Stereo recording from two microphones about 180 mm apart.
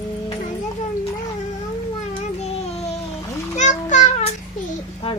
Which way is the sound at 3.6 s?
40° left (ahead or behind).